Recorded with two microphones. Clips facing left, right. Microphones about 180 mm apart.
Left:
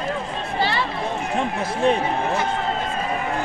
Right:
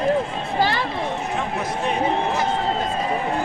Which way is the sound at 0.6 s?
45° right (ahead or behind).